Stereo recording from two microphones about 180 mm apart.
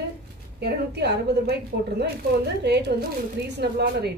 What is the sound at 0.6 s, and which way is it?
Speech, 65° right (ahead or behind).